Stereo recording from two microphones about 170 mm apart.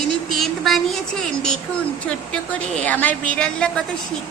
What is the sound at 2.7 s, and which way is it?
A woman's voice, 5° left (ahead or behind).